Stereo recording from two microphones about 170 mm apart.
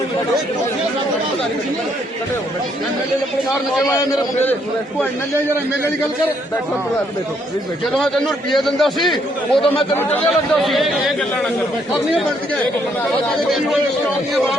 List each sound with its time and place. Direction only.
3.8 s a man's voice: 20° left (ahead or behind)
7.9 s a man's voice: centre (ahead or behind)
10.6 s a man's voice: centre (ahead or behind)
13.1 s a man's voice: centre (ahead or behind)